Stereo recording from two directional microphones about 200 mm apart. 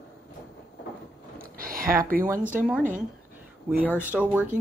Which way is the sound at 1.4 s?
45° right (ahead or behind).